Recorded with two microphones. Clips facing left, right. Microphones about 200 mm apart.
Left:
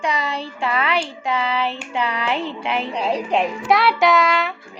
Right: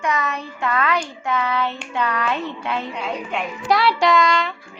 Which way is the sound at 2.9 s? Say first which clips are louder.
Left 6 dB; 35° left (ahead or behind).